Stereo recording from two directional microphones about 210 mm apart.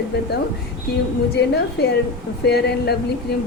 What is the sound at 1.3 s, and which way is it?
A woman's voice, 50° left (ahead or behind).